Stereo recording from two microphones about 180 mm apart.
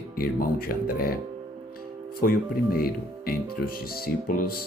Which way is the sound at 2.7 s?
55° left (ahead or behind).